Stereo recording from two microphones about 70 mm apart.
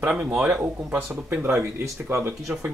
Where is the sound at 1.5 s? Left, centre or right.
Right.